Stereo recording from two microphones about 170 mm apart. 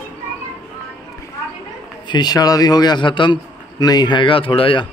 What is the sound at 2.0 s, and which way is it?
A man's voice, 25° left (ahead or behind).